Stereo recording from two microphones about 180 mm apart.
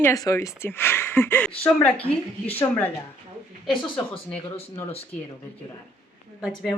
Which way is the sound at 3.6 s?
5° left (ahead or behind).